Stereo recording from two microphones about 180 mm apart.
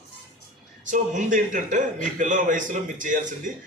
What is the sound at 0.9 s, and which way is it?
A man's voice, 45° right (ahead or behind).